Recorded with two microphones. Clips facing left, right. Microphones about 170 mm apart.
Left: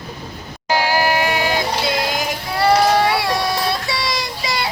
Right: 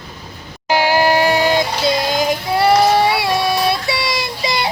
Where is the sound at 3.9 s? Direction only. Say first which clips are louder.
Right 2 dB; 10° right (ahead or behind).